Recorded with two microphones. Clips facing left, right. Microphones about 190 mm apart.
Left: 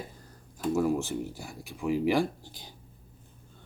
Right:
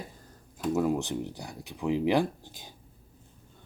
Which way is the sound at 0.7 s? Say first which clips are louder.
Even; 20° right (ahead or behind).